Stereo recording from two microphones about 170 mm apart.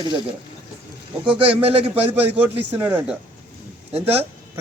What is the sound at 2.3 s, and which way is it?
Speech, 10° right (ahead or behind).